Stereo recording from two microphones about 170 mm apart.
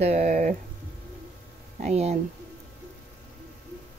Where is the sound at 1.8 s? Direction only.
40° right (ahead or behind).